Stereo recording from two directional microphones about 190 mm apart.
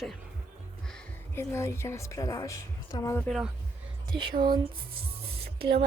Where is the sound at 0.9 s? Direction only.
5° left (ahead or behind).